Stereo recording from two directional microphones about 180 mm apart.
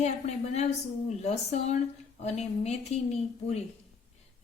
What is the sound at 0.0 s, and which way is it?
A woman's voice, 40° left (ahead or behind).